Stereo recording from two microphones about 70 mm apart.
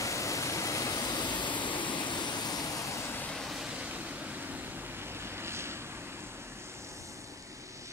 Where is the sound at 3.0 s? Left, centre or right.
Left.